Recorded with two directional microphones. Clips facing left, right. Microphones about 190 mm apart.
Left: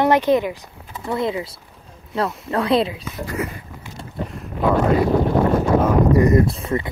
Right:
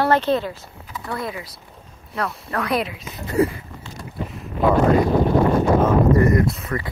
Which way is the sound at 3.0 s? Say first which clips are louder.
Right 6 dB; 25° right (ahead or behind).